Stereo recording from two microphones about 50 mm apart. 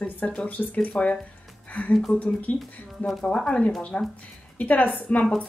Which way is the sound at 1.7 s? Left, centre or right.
Left.